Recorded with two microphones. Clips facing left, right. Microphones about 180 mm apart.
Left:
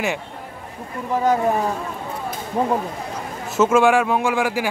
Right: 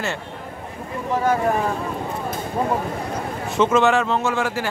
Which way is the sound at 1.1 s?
15° left (ahead or behind).